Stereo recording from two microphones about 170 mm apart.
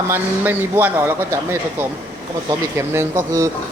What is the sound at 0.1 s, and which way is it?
Speech, 10° right (ahead or behind).